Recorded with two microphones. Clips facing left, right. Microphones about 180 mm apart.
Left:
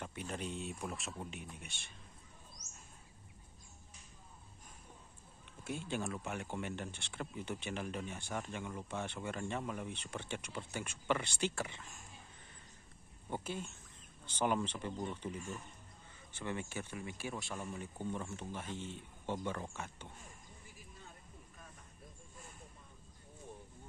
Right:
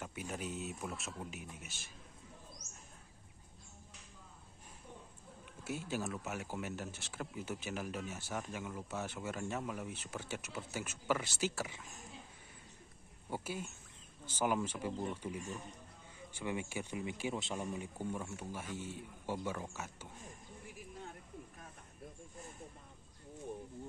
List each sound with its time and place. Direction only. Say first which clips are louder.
0.0 s speech: even; 5° right (ahead or behind)
5.6 s speech: even; 5° right (ahead or behind)
13.3 s speech: even; 5° right (ahead or behind)
20.6 s a sound: right 10 dB; 65° right (ahead or behind)